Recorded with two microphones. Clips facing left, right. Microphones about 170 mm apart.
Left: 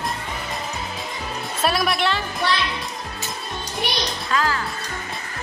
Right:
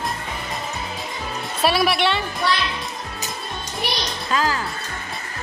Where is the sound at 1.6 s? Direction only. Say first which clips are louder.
Right 2 dB; centre (ahead or behind).